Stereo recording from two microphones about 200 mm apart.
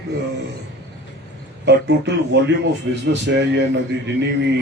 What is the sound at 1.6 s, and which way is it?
Speech, 60° right (ahead or behind).